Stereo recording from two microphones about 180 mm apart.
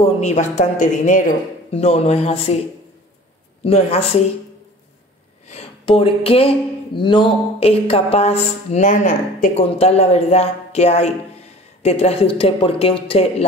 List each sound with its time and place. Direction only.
0.0 s speech: 40° left (ahead or behind)
3.6 s speech: 35° left (ahead or behind)
5.5 s speech: 30° left (ahead or behind)